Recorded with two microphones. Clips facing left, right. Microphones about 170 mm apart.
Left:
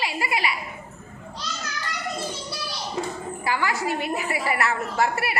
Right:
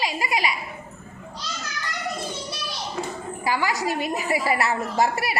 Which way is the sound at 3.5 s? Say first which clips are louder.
Right 1 dB; 15° right (ahead or behind).